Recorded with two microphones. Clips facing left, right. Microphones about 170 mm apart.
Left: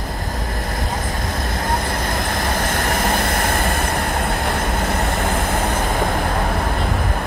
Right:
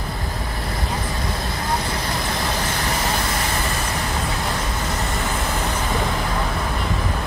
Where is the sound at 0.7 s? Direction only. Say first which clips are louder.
Even; 45° left (ahead or behind).